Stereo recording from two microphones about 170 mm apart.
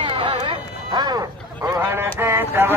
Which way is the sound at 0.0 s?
30° right (ahead or behind).